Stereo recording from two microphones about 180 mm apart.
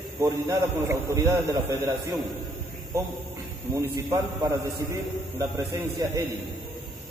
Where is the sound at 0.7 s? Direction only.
15° right (ahead or behind).